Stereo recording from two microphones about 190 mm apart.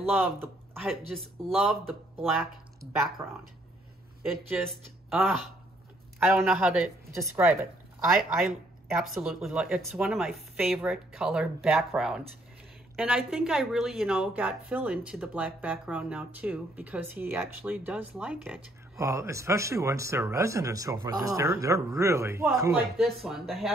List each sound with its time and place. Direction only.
0.1 s speech: 10° right (ahead or behind)
1.1 s speech: centre (ahead or behind)
3.2 s a woman's voice: 10° right (ahead or behind)
5.1 s a woman's voice: centre (ahead or behind)
18.9 s a woman's voice: 15° right (ahead or behind)
22.9 s speech: centre (ahead or behind)